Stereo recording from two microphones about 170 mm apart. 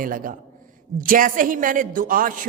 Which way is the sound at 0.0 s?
55° right (ahead or behind).